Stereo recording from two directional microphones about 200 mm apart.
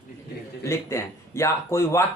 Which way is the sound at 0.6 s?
15° left (ahead or behind).